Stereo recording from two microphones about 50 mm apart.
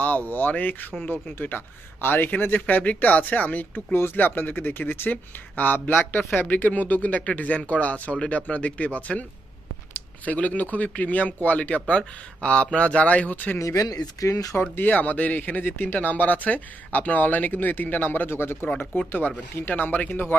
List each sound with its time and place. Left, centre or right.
0.0 s speech: left
3.9 s speech: left
10.2 s speech: left
13.6 s speech: left
14.6 s speech: left
18.8 s speech: left